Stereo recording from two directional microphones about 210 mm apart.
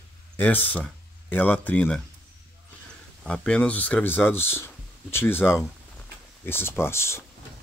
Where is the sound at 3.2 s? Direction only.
5° left (ahead or behind).